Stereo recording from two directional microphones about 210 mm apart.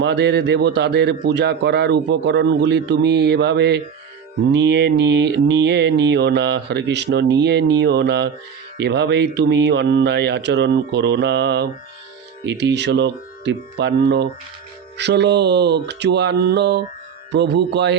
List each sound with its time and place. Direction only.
0.0 s a man's voice: 55° right (ahead or behind)